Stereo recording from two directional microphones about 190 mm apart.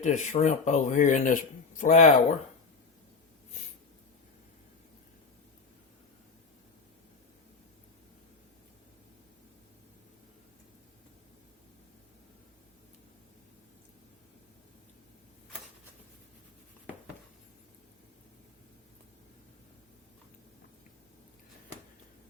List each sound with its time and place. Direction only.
0.0 s speech: 40° left (ahead or behind)